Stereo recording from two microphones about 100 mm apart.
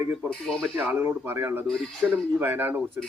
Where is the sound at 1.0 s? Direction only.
25° right (ahead or behind).